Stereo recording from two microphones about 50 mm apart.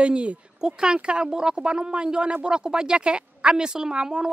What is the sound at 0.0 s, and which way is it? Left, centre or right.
A woman's voice, right.